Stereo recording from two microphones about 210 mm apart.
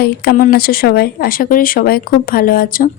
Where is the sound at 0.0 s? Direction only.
45° left (ahead or behind).